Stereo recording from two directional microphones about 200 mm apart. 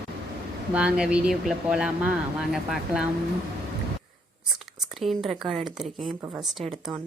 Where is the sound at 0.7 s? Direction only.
5° right (ahead or behind).